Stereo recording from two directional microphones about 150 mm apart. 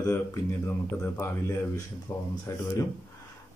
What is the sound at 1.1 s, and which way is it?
Speech, 15° left (ahead or behind).